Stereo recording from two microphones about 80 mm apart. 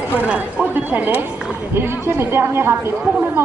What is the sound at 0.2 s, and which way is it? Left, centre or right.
Speech, centre.